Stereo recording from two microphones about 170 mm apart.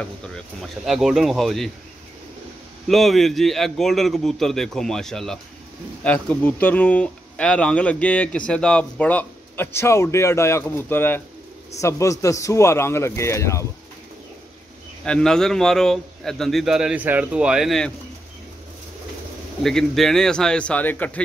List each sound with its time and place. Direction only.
0.8 s a man's voice: centre (ahead or behind)
2.9 s a man's voice: centre (ahead or behind); by 13.7 s 15° left (ahead or behind)
15.0 s a man's voice: 5° left (ahead or behind)
19.6 s a man's voice: 5° left (ahead or behind)